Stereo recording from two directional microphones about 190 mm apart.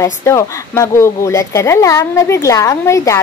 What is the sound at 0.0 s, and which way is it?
Speech, 15° left (ahead or behind).